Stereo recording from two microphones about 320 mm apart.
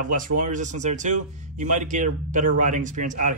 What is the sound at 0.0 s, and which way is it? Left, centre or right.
Speech, right.